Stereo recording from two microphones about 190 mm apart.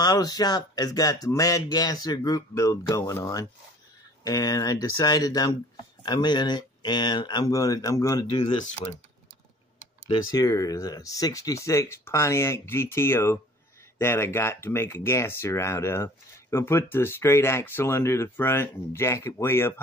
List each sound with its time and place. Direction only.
0.0 s speech: 20° left (ahead or behind)
10.3 s speech: 20° left (ahead or behind)